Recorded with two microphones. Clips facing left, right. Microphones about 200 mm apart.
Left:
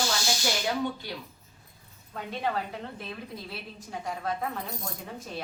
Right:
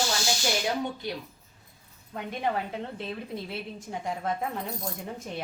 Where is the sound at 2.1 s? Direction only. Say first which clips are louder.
Right 1 dB; 15° right (ahead or behind).